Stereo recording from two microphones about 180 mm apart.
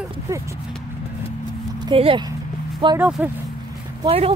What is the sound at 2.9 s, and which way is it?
Speech, 10° right (ahead or behind).